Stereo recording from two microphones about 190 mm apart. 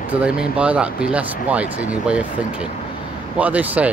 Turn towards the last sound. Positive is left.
turn(degrees=-10)  # may be behind; listen again after turning